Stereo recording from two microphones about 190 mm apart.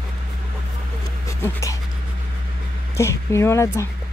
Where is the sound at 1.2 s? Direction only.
15° left (ahead or behind).